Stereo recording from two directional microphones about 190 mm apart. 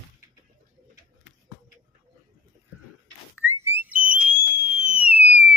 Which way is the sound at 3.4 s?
15° right (ahead or behind).